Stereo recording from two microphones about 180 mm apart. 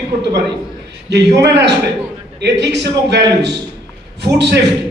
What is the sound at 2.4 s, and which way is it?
A man's voice, 70° right (ahead or behind).